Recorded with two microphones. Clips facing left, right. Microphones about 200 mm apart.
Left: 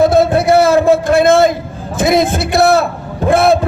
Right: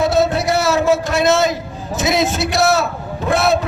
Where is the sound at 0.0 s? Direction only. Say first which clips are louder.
Left 5 dB; 55° left (ahead or behind).